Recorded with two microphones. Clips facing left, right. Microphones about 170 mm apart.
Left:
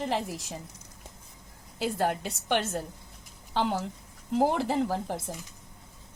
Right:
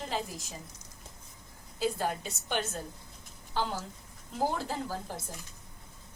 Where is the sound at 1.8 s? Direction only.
70° left (ahead or behind).